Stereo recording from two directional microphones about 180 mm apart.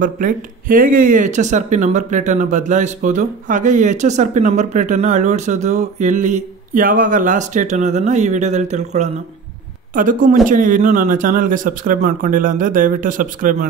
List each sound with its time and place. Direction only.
0.0 s speech: 50° right (ahead or behind)